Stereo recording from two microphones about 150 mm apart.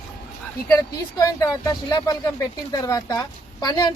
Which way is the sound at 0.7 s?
20° left (ahead or behind).